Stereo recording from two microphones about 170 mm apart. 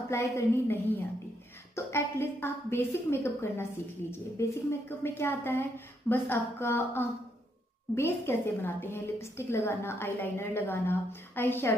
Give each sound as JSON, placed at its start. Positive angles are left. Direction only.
{"t": 0.1, "sound": "a woman's voice", "side_deg": 15}